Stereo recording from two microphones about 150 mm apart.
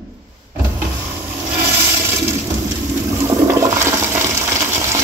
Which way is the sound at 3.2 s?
20° right (ahead or behind).